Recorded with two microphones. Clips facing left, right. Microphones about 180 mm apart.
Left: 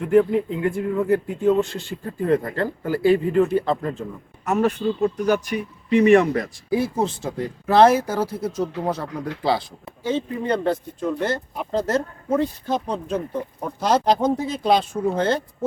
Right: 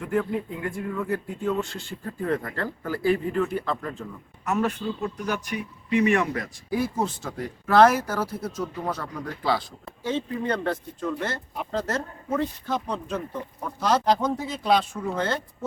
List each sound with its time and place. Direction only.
0.0 s speech: 25° left (ahead or behind)
4.5 s speech: 35° left (ahead or behind)
10.0 s speech: 10° left (ahead or behind)
10.4 s speech: 25° left (ahead or behind)